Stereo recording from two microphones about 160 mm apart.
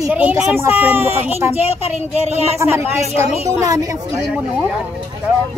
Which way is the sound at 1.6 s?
40° left (ahead or behind).